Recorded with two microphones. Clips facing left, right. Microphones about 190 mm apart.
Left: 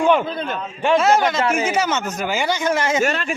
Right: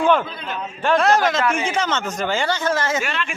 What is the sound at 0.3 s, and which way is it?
Speech, 50° left (ahead or behind).